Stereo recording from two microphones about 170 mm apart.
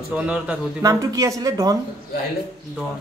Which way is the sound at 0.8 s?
20° right (ahead or behind).